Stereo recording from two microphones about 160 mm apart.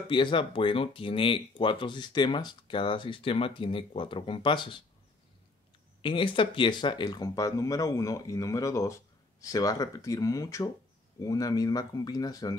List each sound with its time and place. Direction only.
0.1 s speech: 30° left (ahead or behind)
6.0 s speech: 30° left (ahead or behind)